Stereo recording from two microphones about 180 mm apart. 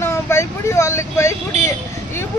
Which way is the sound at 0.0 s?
15° left (ahead or behind).